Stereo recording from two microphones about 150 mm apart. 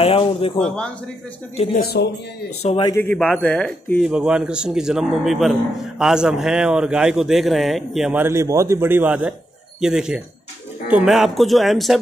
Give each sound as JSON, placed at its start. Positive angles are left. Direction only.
{"t": 0.0, "sound": "speech", "side_deg": 40}
{"t": 0.6, "sound": "speech", "side_deg": 5}
{"t": 1.7, "sound": "speech", "side_deg": 90}
{"t": 2.6, "sound": "a man's voice", "side_deg": 45}
{"t": 3.0, "sound": "speech", "side_deg": 10}
{"t": 4.0, "sound": "a man's voice", "side_deg": -5}
{"t": 8.1, "sound": "a man's voice", "side_deg": -15}